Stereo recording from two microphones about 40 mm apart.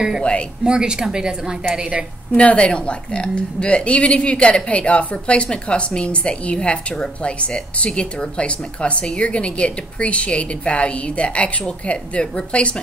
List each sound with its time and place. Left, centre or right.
0.7 s a woman's voice: centre
2.3 s a woman's voice: left